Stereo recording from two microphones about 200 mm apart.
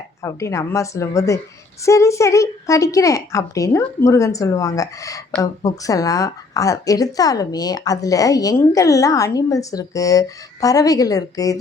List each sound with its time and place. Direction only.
0.2 s a woman's voice: 15° left (ahead or behind)